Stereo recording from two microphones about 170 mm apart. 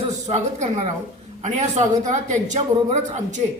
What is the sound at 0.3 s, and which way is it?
A woman's voice, 40° right (ahead or behind).